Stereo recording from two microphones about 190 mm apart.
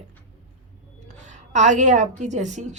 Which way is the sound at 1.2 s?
40° right (ahead or behind).